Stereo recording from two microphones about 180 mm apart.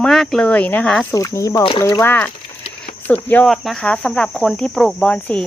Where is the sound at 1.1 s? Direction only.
20° left (ahead or behind).